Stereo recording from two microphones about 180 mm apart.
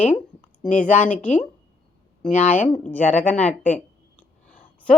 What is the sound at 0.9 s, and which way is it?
Speech, 5° left (ahead or behind).